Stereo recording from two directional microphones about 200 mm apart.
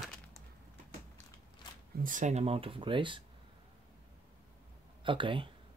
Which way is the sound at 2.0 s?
40° right (ahead or behind).